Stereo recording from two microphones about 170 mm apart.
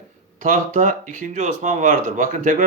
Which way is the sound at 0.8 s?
50° right (ahead or behind).